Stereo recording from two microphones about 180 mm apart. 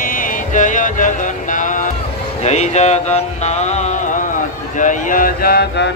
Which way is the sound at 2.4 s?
40° left (ahead or behind).